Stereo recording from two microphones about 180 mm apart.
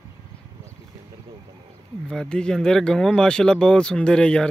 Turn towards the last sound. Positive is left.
turn(degrees=5)  # may be behind; listen again after turning